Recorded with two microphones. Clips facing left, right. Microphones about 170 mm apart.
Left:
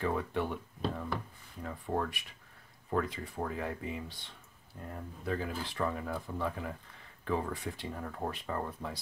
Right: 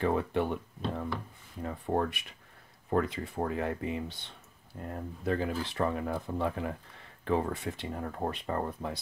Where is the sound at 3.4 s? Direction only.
25° right (ahead or behind).